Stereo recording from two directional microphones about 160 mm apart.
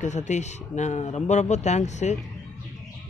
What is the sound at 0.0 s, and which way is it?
Speech, 45° left (ahead or behind).